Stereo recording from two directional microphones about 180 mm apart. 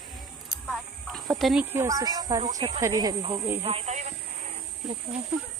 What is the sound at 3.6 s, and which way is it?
Speech, 35° right (ahead or behind).